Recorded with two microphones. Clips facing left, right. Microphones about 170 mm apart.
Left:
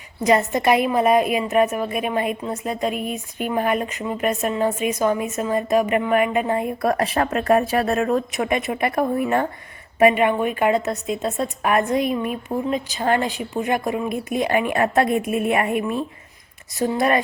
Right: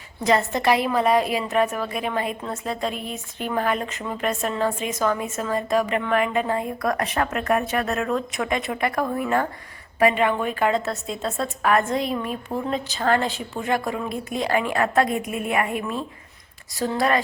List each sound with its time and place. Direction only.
0.3 s a woman's voice: 20° left (ahead or behind)